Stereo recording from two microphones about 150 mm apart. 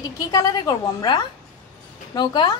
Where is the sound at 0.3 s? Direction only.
25° left (ahead or behind).